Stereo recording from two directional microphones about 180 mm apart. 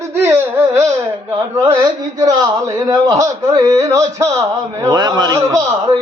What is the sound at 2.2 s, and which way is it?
Speech, 20° right (ahead or behind).